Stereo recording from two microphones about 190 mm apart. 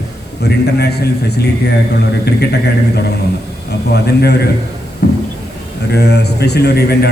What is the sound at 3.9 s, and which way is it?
Speech, 60° left (ahead or behind).